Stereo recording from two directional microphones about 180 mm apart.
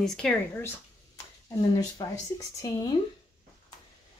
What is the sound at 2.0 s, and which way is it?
Speech, 20° left (ahead or behind).